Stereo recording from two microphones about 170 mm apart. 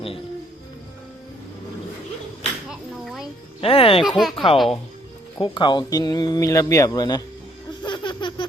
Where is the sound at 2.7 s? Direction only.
Centre (ahead or behind).